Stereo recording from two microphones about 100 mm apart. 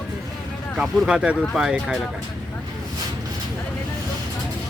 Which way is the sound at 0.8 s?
10° right (ahead or behind).